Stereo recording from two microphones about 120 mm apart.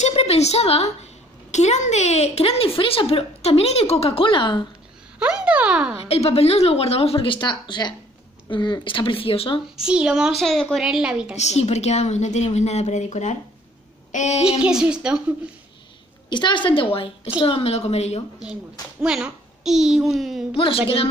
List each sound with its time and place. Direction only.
0.1 s a woman's voice: 60° left (ahead or behind)
1.5 s a woman's voice: 75° left (ahead or behind); by 4.6 s 40° left (ahead or behind)
5.2 s speech: 10° right (ahead or behind)
6.0 s a woman's voice: 60° left (ahead or behind)
9.8 s a woman's voice: 5° right (ahead or behind)
11.3 s a woman's voice: 65° left (ahead or behind)
14.6 s speech: 5° right (ahead or behind)
16.3 s a woman's voice: 40° left (ahead or behind); by 18.2 s 65° left (ahead or behind)
19.0 s a woman's voice: 5° right (ahead or behind)
20.5 s a woman's voice: 50° left (ahead or behind)